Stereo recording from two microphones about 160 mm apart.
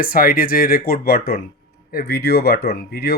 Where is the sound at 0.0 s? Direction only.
65° left (ahead or behind).